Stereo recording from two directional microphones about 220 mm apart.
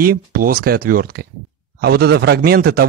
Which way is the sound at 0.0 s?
40° right (ahead or behind).